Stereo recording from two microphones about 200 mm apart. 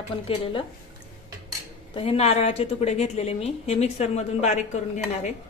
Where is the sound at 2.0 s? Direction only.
30° left (ahead or behind).